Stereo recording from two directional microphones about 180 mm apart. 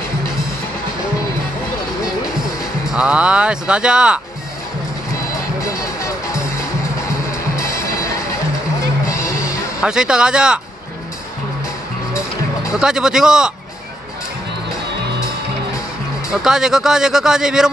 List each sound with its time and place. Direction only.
2.9 s speech: 5° right (ahead or behind)
5.6 s music: 15° left (ahead or behind)
9.8 s speech: 5° right (ahead or behind)
12.7 s speech: 5° right (ahead or behind)
16.3 s speech: 5° right (ahead or behind)